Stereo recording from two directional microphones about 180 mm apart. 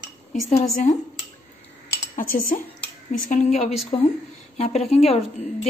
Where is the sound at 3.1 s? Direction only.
45° left (ahead or behind).